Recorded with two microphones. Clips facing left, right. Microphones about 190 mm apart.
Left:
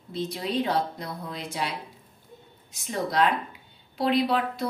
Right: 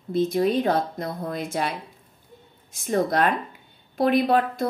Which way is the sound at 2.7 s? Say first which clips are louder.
Right 4 dB; 50° right (ahead or behind).